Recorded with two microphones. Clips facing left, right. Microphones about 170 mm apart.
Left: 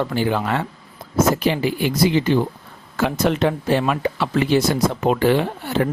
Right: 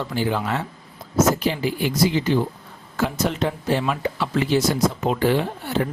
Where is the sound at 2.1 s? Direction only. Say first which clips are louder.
Left 3 dB; 60° left (ahead or behind).